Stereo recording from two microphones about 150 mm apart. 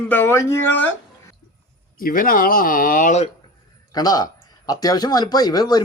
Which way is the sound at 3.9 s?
25° left (ahead or behind).